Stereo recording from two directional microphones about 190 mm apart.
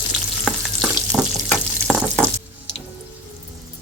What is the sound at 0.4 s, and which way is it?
Frying, centre (ahead or behind).